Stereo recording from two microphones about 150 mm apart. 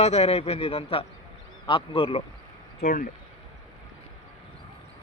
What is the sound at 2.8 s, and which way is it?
Speech, 90° left.